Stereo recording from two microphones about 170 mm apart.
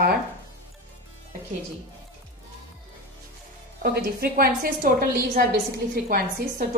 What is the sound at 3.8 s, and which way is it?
A woman's voice, 65° right (ahead or behind).